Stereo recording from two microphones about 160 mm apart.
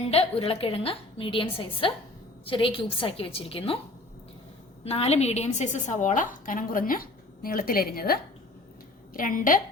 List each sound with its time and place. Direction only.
0.1 s a woman's voice: 35° left (ahead or behind)
4.8 s a woman's voice: 40° left (ahead or behind); by 9.6 s 60° left (ahead or behind)